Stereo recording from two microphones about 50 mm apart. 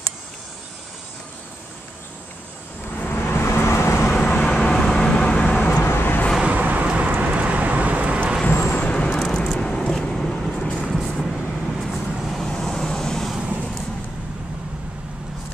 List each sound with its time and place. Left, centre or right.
3.3 s vehicle: left
4.1 s vehicle: left
4.5 s vehicle: centre
5.5 s vehicle: left
5.9 s vehicle: left
6.4 s vehicle: right
8.5 s vehicle: left
8.8 s vehicle: left
9.3 s vehicle: centre
13.4 s vehicle: right